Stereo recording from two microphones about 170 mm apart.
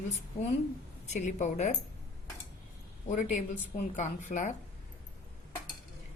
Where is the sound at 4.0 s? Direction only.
45° left (ahead or behind).